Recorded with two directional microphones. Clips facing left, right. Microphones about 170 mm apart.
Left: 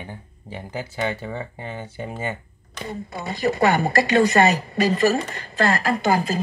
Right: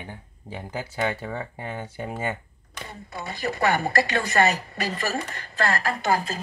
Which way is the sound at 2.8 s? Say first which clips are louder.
Left 6 dB; 20° left (ahead or behind).